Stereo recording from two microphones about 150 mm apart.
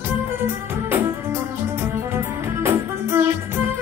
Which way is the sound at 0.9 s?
15° right (ahead or behind).